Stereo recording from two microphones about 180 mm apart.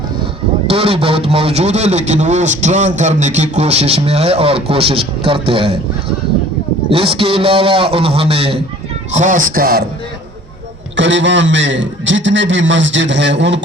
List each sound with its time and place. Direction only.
0.7 s a man's voice: 30° right (ahead or behind)
6.9 s a man's voice: 30° right (ahead or behind)
9.1 s speech: 45° right (ahead or behind)
10.9 s a man's voice: 90° right